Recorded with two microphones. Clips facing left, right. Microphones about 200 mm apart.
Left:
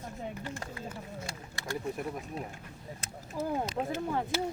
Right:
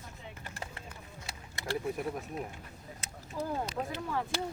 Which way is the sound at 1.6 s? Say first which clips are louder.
Right 2 dB; 20° right (ahead or behind).